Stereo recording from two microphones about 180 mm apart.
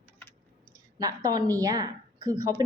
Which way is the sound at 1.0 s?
20° right (ahead or behind).